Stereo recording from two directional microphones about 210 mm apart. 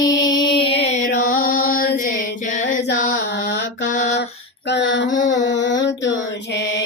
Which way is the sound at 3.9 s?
35° left (ahead or behind).